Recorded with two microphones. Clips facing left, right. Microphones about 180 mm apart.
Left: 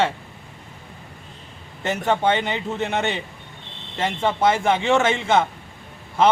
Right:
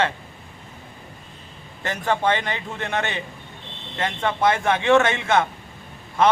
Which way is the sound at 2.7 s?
5° left (ahead or behind).